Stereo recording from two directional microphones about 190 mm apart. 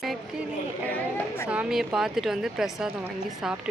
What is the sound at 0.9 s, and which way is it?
Chatter, 10° left (ahead or behind).